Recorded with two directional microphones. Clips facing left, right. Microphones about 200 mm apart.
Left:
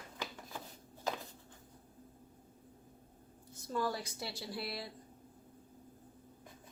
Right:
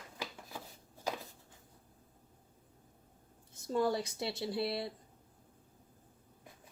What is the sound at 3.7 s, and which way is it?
Speech, 25° right (ahead or behind).